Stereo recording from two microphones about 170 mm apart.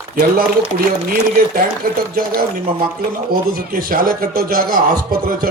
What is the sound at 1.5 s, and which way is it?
Speech, 60° right (ahead or behind).